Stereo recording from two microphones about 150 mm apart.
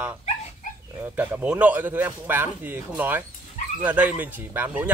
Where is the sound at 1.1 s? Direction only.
10° right (ahead or behind).